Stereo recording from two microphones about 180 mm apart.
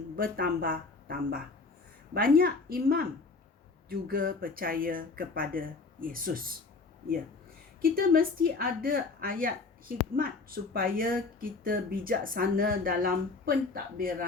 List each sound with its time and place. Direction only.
0.2 s a woman's voice: 55° right (ahead or behind)
7.8 s speech: 55° right (ahead or behind)